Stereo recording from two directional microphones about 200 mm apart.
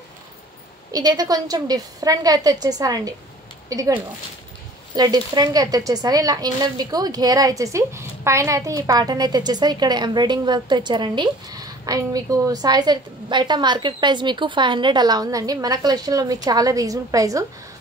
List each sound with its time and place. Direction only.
0.9 s speech: 20° right (ahead or behind)